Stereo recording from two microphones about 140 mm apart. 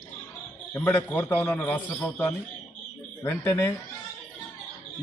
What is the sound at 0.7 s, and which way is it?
A man's voice, 15° left (ahead or behind).